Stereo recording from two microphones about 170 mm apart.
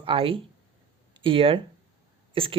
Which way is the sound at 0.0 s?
30° right (ahead or behind).